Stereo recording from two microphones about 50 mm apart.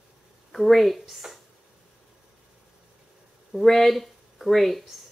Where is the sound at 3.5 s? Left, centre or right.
Centre.